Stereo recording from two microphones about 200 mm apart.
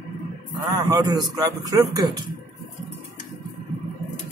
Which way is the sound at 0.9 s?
20° right (ahead or behind).